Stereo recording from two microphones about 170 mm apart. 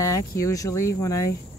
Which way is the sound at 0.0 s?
20° left (ahead or behind).